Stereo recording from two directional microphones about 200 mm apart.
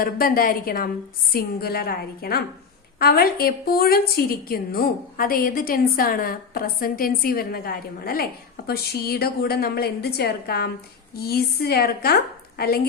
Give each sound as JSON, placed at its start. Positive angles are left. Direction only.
{"t": 0.0, "sound": "a woman's voice", "side_deg": 45}